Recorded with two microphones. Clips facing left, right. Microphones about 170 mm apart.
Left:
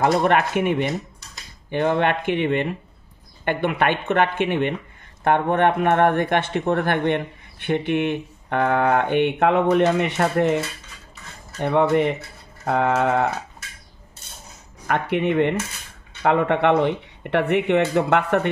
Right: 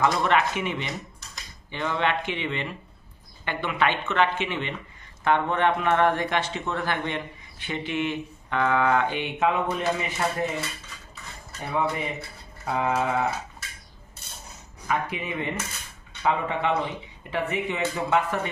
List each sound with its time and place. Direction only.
0.0 s speech: 50° left (ahead or behind)
11.9 s speech: 70° left (ahead or behind)
14.9 s speech: 65° left (ahead or behind)